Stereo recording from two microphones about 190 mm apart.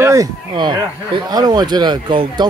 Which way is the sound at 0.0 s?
15° right (ahead or behind).